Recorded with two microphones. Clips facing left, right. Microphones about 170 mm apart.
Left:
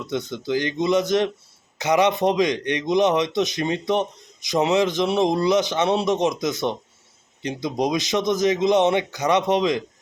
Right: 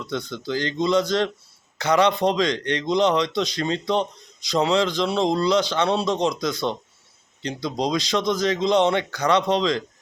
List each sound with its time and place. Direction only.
0.0 s a man's voice: 15° left (ahead or behind)